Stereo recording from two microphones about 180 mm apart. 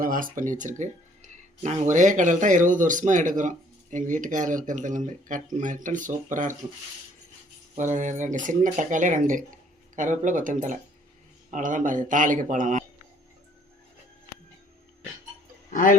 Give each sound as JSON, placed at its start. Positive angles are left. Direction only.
{"t": 0.0, "sound": "speech", "side_deg": -50}
{"t": 7.8, "sound": "speech", "side_deg": -45}
{"t": 15.7, "sound": "music", "side_deg": 50}